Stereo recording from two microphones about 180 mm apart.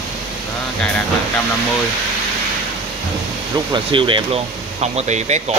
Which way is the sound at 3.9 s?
30° right (ahead or behind).